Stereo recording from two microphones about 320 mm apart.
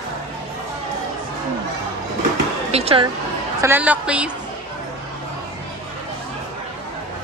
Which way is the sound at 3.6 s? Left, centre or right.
Centre.